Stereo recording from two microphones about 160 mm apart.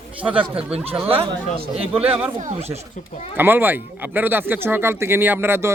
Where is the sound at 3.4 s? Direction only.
10° right (ahead or behind).